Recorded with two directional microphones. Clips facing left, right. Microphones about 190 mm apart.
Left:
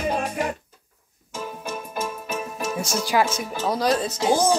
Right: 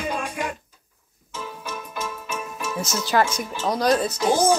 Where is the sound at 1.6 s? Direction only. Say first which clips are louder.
Left 3 dB; 45° left (ahead or behind).